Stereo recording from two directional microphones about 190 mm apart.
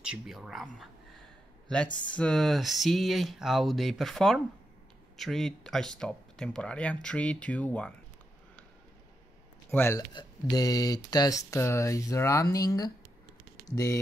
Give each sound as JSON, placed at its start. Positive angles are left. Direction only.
{"t": 0.0, "sound": "speech", "side_deg": -5}
{"t": 9.7, "sound": "speech", "side_deg": 10}